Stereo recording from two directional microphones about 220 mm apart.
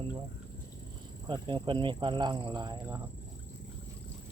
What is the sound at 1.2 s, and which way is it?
Speech, 20° right (ahead or behind).